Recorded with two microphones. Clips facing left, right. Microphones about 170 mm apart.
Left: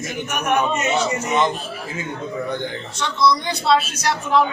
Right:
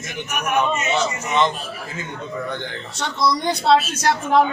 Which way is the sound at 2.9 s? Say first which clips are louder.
Left 2 dB; 45° right (ahead or behind).